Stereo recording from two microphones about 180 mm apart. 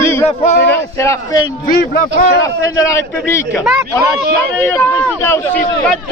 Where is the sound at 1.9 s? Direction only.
55° left (ahead or behind).